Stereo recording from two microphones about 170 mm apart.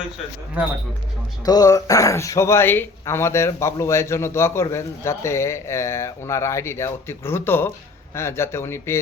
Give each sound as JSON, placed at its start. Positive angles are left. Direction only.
{"t": 1.5, "sound": "speech", "side_deg": 20}